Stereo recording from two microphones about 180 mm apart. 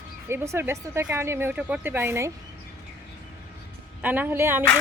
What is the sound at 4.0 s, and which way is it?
Speech, 10° right (ahead or behind).